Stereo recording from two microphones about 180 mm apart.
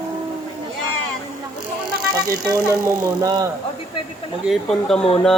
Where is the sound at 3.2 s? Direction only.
20° right (ahead or behind).